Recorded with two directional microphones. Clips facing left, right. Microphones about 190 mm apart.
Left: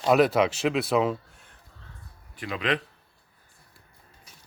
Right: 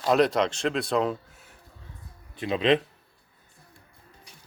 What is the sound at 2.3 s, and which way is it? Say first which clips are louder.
Speech: right 6 dB; 25° right (ahead or behind).